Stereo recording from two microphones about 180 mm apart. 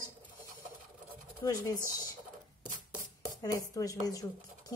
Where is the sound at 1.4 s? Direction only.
20° left (ahead or behind).